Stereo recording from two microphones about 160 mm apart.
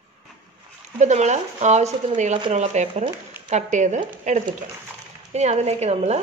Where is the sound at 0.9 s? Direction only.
45° right (ahead or behind).